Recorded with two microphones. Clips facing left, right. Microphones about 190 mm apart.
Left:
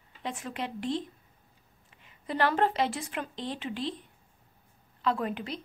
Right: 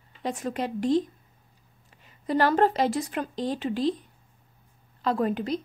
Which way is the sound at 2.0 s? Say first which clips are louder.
Right 5 dB; 40° right (ahead or behind).